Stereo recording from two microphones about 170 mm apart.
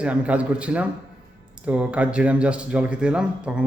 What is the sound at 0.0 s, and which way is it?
A man's voice, 5° right (ahead or behind).